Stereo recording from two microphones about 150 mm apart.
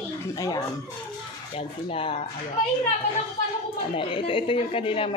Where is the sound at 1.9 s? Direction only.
35° left (ahead or behind).